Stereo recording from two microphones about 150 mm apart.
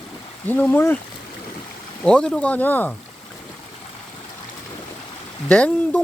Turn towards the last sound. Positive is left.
turn(degrees=10)  # may be behind; listen again after turning